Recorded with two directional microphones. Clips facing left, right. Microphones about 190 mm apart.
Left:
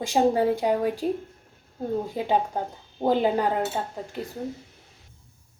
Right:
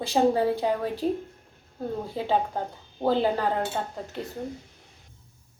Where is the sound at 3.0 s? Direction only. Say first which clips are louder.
Left 2 dB; 15° left (ahead or behind).